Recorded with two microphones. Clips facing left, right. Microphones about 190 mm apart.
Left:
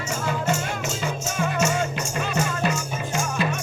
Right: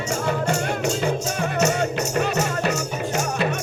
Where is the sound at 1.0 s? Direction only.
60° right (ahead or behind).